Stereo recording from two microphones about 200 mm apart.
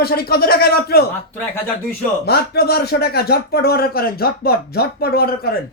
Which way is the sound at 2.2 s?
55° left (ahead or behind).